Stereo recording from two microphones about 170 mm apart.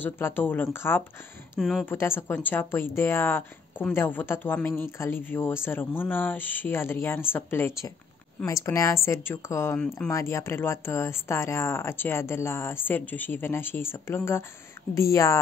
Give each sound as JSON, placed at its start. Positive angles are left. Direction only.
{"t": 0.0, "sound": "speech", "side_deg": 10}
{"t": 1.6, "sound": "speech", "side_deg": 0}
{"t": 1.9, "sound": "speech", "side_deg": 15}